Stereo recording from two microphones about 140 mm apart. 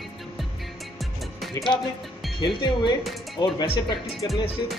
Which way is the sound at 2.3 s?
35° left (ahead or behind).